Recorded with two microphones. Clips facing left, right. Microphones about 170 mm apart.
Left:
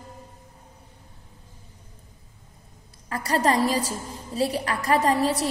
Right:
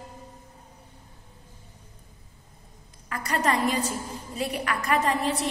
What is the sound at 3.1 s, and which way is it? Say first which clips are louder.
A woman's voice: left 3 dB; 35° left (ahead or behind).